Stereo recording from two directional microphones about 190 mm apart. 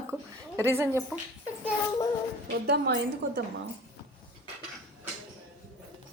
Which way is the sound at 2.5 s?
60° right (ahead or behind).